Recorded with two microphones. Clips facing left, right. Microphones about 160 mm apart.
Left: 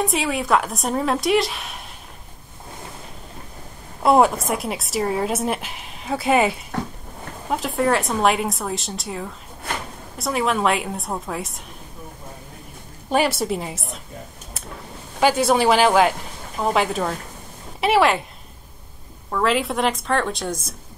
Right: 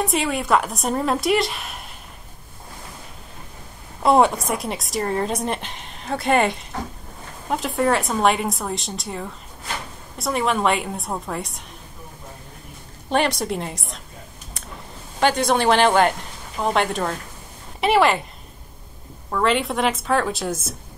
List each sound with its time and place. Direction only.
0.0 s a woman's voice: centre (ahead or behind)
4.0 s a woman's voice: centre (ahead or behind)
13.1 s a woman's voice: 5° left (ahead or behind)
15.1 s a woman's voice: 5° left (ahead or behind)
19.3 s a woman's voice: centre (ahead or behind)